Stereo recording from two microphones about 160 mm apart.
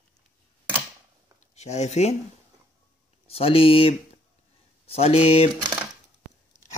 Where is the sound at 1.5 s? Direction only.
45° left (ahead or behind).